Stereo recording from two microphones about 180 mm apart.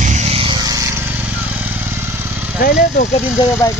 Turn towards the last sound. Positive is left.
turn(degrees=15)  # may be behind; listen again after turning